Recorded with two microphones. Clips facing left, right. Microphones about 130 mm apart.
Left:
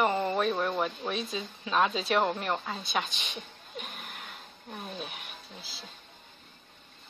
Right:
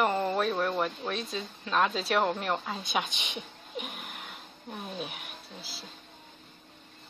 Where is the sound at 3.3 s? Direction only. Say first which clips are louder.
Right 3 dB; 5° right (ahead or behind).